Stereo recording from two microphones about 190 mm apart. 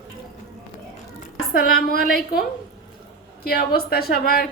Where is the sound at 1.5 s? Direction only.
50° left (ahead or behind).